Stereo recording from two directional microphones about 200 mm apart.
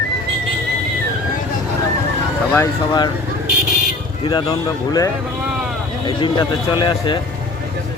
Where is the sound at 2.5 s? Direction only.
15° left (ahead or behind).